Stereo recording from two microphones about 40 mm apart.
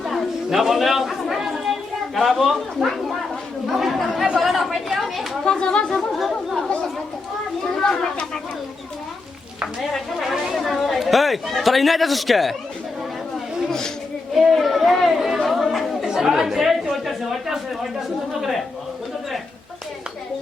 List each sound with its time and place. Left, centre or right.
0.0 s chatter: centre
2.1 s speech: centre
5.5 s speech: left
6.0 s speech: centre
7.8 s speech: centre
10.2 s speech: centre
13.7 s speech: centre
14.3 s speech: centre
15.4 s chatter: centre
16.0 s speech: centre
16.9 s a sound: centre